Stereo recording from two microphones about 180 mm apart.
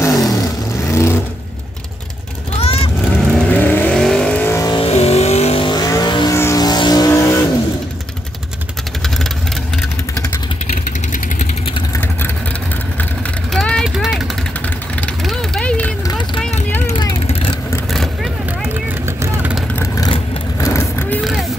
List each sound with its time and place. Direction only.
0.0 s vehicle: 20° left (ahead or behind)
2.6 s honk: 35° left (ahead or behind)
3.3 s vehicle: 10° left (ahead or behind)
4.8 s vehicle: 35° left (ahead or behind); by 7.3 s 20° left (ahead or behind)
13.5 s vehicle: 5° left (ahead or behind)
16.8 s vehicle: 30° left (ahead or behind)
17.9 s vehicle: centre (ahead or behind)
19.7 s vehicle: 15° left (ahead or behind)
21.2 s vehicle: centre (ahead or behind)